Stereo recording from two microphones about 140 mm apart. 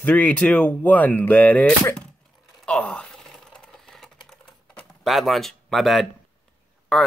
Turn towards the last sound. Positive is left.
turn(degrees=0)  # may be behind; listen again after turning